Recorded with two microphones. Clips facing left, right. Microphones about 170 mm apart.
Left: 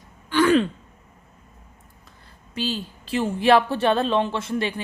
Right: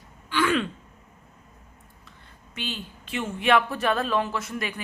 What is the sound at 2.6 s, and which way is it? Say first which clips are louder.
Speech: left 7 dB; 35° left (ahead or behind).